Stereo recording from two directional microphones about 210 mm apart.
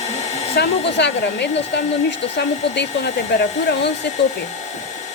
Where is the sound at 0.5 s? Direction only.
55° left (ahead or behind).